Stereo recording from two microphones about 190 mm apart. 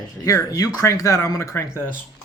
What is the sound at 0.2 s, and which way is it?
Speech, 15° left (ahead or behind).